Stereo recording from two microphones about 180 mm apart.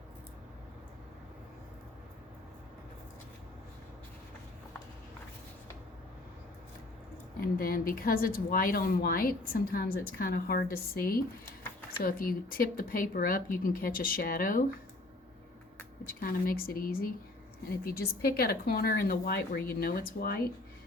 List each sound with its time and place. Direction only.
7.3 s a woman's voice: 55° left (ahead or behind)
16.0 s a woman's voice: 55° left (ahead or behind)